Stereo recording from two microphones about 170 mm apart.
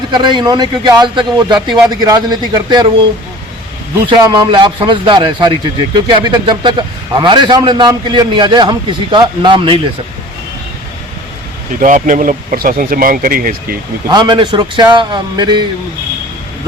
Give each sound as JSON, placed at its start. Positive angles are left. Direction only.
{"t": 0.1, "sound": "a man's voice", "side_deg": -25}
{"t": 4.1, "sound": "a man's voice", "side_deg": -25}
{"t": 11.8, "sound": "speech", "side_deg": -50}
{"t": 14.1, "sound": "a man's voice", "side_deg": -25}